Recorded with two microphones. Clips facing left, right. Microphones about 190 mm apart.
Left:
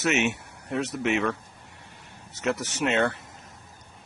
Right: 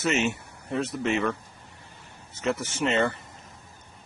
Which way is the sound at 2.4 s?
80° left.